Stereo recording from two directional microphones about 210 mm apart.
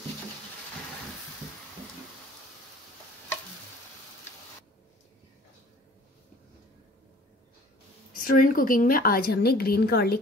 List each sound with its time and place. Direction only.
8.1 s a woman's voice: 40° left (ahead or behind)